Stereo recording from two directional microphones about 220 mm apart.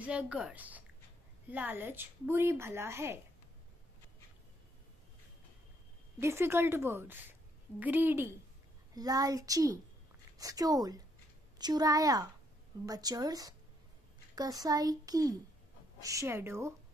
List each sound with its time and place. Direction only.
0.0 s speech: 5° right (ahead or behind)
6.1 s speech: 10° right (ahead or behind)